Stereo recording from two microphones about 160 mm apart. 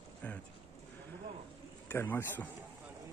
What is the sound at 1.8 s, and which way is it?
Speech, 15° left (ahead or behind).